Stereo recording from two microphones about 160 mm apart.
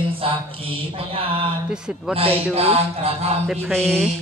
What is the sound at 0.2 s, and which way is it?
Mantra, 35° right (ahead or behind).